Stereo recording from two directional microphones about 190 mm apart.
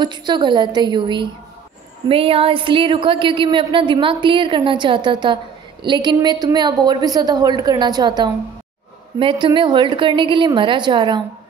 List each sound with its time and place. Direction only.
0.0 s a woman's voice: 25° right (ahead or behind)